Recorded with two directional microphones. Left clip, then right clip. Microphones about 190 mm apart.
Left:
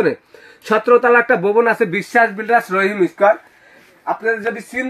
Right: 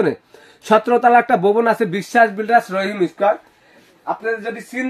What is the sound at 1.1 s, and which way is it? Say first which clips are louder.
Speech: even; 50° right (ahead or behind).